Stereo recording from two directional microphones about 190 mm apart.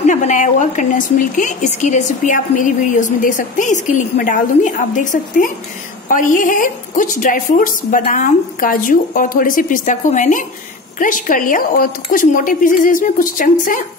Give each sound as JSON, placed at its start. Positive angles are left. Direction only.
{"t": 0.0, "sound": "a woman's voice", "side_deg": 40}